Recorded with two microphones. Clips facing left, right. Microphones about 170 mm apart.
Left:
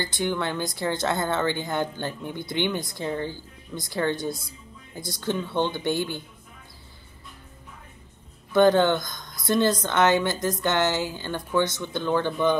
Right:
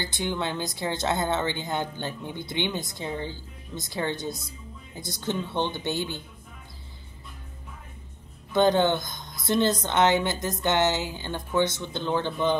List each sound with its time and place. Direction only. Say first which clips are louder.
0.0 s a woman's voice: left 2 dB; 20° right (ahead or behind)
8.5 s a woman's voice: left 3 dB; 20° right (ahead or behind)